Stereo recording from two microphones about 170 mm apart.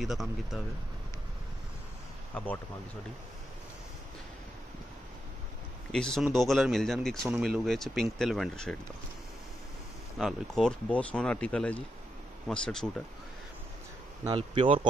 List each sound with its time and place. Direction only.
0.0 s speech: centre (ahead or behind)
2.3 s speech: 10° left (ahead or behind)
5.9 s speech: 5° left (ahead or behind)
10.1 s speech: centre (ahead or behind)
14.2 s speech: 30° right (ahead or behind)